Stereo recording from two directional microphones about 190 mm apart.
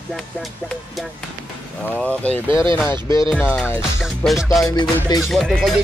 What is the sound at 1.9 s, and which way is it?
Speech, 5° left (ahead or behind).